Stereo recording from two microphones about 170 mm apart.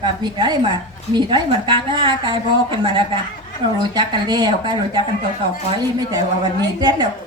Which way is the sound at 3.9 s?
25° right (ahead or behind).